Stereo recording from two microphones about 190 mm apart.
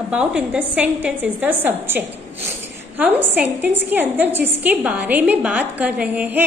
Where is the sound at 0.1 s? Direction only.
5° right (ahead or behind).